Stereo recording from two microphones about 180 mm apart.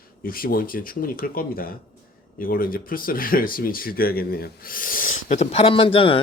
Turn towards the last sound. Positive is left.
turn(degrees=30)  # may be behind; listen again after turning